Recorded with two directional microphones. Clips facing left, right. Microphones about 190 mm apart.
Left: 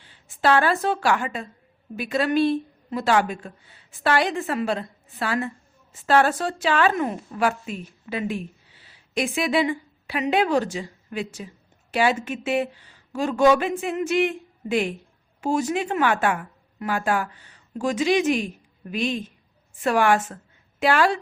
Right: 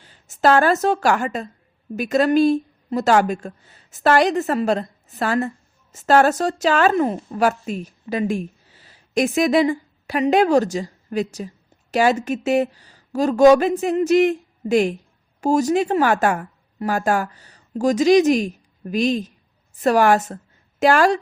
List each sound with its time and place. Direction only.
0.0 s a woman's voice: 45° right (ahead or behind)